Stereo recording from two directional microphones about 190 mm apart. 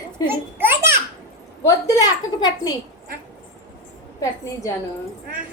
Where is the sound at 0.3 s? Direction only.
10° right (ahead or behind).